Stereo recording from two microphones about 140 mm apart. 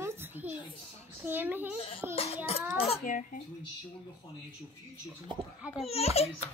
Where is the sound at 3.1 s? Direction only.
65° left (ahead or behind).